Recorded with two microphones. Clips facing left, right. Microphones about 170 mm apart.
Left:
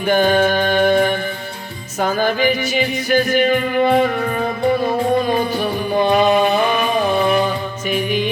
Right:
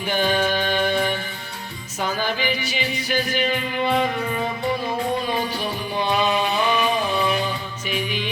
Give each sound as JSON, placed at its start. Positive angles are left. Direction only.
{"t": 0.0, "sound": "music", "side_deg": 50}